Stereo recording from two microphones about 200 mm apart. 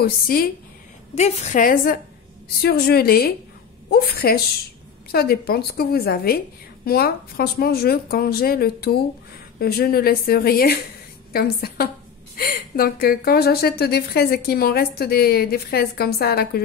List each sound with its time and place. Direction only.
0.0 s a woman's voice: 50° left (ahead or behind)
1.1 s a woman's voice: 35° left (ahead or behind); by 16.6 s 50° left (ahead or behind)